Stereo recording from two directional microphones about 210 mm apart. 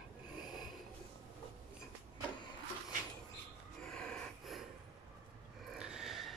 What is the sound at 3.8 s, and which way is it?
Gasp, 5° left (ahead or behind).